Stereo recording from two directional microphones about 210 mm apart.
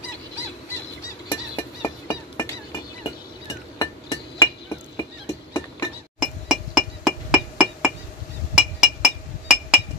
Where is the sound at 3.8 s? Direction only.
15° left (ahead or behind).